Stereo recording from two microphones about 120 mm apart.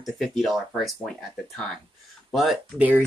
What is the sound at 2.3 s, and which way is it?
Speech, centre (ahead or behind).